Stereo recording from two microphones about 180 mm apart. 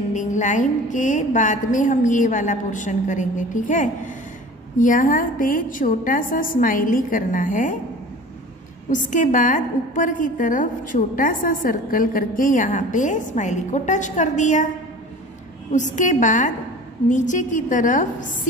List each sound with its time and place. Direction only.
0.1 s a woman's voice: 45° left (ahead or behind)
8.9 s a woman's voice: 45° left (ahead or behind)
15.7 s a woman's voice: 45° left (ahead or behind)